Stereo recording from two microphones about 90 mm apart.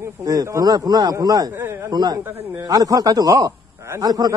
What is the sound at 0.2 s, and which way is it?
A man's voice, 40° right (ahead or behind).